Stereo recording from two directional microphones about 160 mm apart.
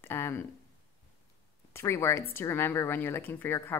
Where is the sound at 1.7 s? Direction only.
15° left (ahead or behind).